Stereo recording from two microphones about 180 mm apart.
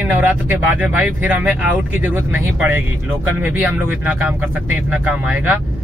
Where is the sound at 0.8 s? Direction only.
5° right (ahead or behind).